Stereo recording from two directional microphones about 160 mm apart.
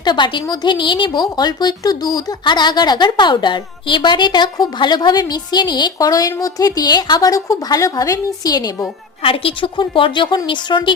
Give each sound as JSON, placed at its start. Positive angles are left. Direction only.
{"t": 0.0, "sound": "a woman's voice", "side_deg": 30}